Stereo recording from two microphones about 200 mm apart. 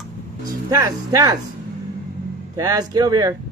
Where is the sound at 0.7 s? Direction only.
15° right (ahead or behind).